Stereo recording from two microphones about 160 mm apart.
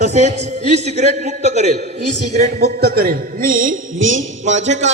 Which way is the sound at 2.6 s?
80° right.